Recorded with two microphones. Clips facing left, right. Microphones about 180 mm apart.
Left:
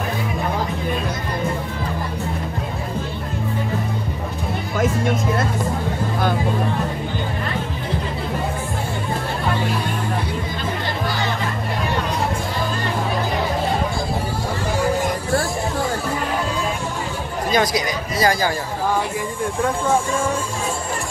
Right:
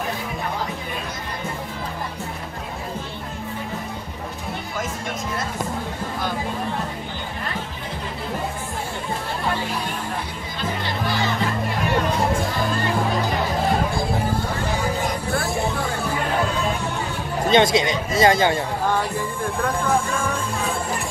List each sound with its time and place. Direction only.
17.5 s speech: 25° right (ahead or behind)